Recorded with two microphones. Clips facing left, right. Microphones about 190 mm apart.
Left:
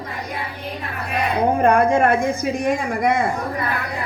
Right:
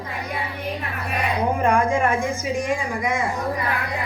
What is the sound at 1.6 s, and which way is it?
Speech, 60° left (ahead or behind).